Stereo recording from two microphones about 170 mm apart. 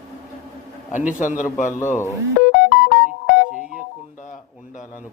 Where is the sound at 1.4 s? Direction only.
50° left (ahead or behind).